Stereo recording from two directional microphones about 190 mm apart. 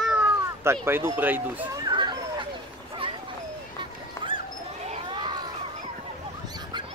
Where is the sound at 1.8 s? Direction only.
25° right (ahead or behind).